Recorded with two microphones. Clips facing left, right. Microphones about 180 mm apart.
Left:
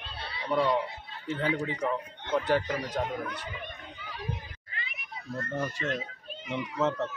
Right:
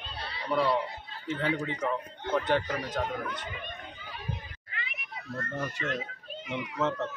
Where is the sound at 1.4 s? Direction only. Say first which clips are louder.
Left 1 dB; 10° left (ahead or behind).